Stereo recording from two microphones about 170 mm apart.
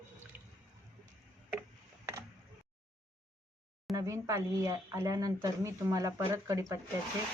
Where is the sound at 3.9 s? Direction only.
20° right (ahead or behind).